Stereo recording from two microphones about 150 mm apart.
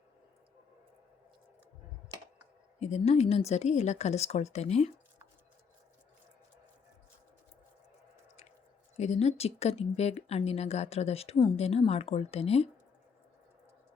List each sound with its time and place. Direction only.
2.7 s speech: 45° left (ahead or behind)
9.0 s speech: 45° left (ahead or behind)